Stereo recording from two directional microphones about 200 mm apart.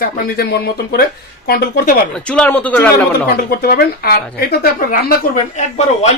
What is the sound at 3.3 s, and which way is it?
A woman's voice, 50° left (ahead or behind).